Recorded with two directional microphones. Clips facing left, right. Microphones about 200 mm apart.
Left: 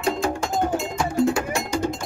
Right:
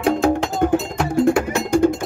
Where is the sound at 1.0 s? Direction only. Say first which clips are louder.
Right 3 dB; 60° right (ahead or behind).